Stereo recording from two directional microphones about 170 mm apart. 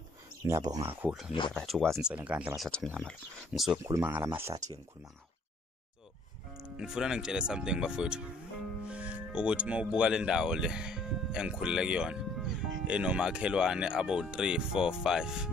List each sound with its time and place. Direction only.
0.4 s speech: 20° right (ahead or behind)
1.0 s speech: 5° right (ahead or behind)
3.8 s speech: 15° right (ahead or behind)
6.5 s speech: 5° right (ahead or behind)